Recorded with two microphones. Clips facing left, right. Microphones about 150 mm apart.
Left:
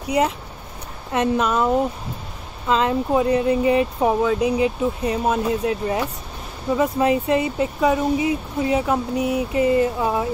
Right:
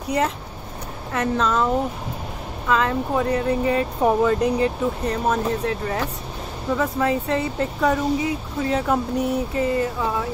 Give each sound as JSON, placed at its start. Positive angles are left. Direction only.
{"t": 1.1, "sound": "speech", "side_deg": 15}
{"t": 2.7, "sound": "speech", "side_deg": 20}
{"t": 4.0, "sound": "speech", "side_deg": 5}
{"t": 9.5, "sound": "speech", "side_deg": 20}